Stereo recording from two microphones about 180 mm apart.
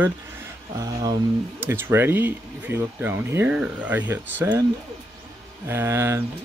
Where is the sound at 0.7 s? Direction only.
20° right (ahead or behind).